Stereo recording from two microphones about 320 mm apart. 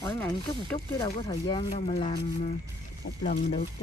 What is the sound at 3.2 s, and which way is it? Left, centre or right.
Speech, centre.